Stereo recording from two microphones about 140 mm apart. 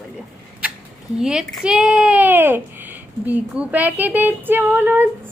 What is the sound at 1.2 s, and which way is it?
A woman's voice, 5° right (ahead or behind).